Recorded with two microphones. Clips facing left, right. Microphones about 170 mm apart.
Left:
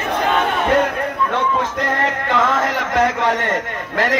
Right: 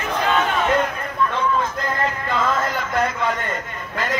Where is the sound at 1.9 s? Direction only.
80° left.